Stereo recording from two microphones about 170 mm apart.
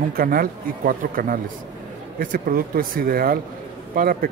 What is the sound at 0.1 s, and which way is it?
Speech, 60° right (ahead or behind).